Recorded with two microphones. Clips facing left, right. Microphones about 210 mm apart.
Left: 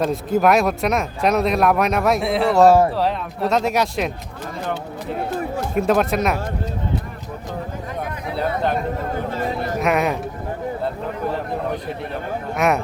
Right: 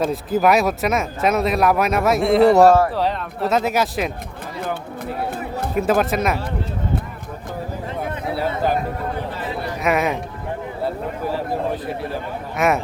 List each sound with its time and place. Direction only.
0.0 s speech: centre (ahead or behind)
5.7 s speech: centre (ahead or behind)
9.3 s chatter: 45° left (ahead or behind)
9.8 s speech: centre (ahead or behind)
12.5 s speech: centre (ahead or behind)